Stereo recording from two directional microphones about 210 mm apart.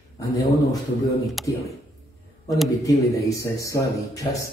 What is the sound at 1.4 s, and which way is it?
Speech, centre (ahead or behind).